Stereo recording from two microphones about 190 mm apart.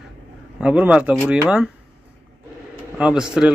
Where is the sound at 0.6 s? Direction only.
5° right (ahead or behind).